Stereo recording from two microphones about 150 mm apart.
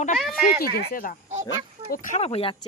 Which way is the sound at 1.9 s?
60° left (ahead or behind).